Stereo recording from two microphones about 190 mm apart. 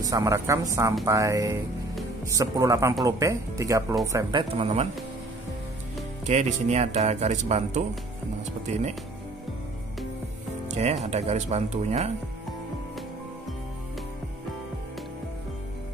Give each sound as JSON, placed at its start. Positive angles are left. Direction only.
{"t": 0.0, "sound": "a man's voice", "side_deg": -20}
{"t": 6.2, "sound": "speech", "side_deg": -40}
{"t": 10.7, "sound": "speech", "side_deg": -35}